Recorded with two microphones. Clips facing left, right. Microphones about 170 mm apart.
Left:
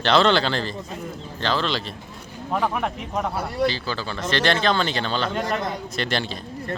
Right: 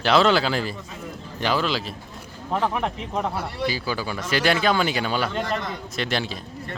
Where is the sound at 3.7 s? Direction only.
10° right (ahead or behind).